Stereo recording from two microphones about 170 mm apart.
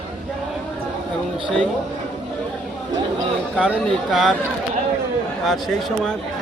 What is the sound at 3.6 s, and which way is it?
Speech, 5° right (ahead or behind).